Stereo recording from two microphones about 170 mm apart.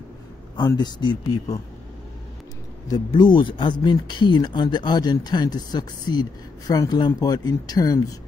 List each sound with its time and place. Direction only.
0.6 s speech: 25° left (ahead or behind)
2.9 s speech: 25° left (ahead or behind)